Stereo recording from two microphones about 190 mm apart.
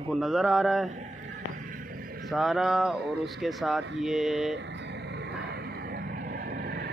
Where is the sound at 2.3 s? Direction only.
Centre (ahead or behind).